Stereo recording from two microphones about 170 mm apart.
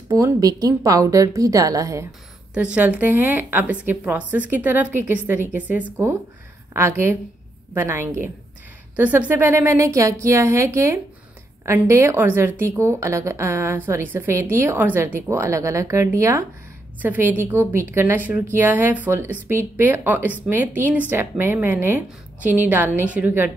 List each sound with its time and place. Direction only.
0.1 s a woman's voice: 20° right (ahead or behind)
2.5 s a woman's voice: 5° right (ahead or behind)